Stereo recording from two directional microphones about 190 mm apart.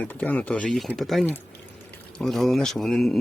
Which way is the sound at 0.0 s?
10° left (ahead or behind).